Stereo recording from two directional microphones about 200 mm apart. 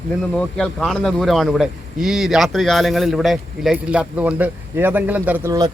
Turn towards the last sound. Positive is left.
turn(degrees=-15)  # may be behind; listen again after turning